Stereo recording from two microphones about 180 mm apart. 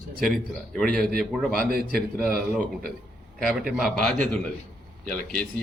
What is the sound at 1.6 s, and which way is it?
Speech, 55° right (ahead or behind).